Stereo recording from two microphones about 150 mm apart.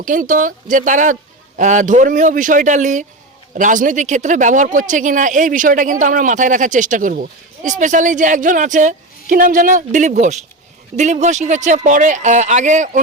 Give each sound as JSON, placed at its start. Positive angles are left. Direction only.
{"t": 0.0, "sound": "speech", "side_deg": -60}